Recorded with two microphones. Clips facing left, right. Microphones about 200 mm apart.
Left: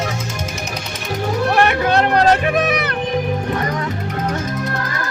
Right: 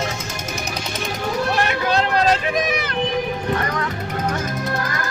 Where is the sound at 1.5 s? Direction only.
60° left (ahead or behind).